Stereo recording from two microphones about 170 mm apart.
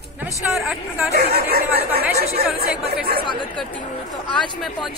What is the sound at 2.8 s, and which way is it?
Speech, 70° right (ahead or behind).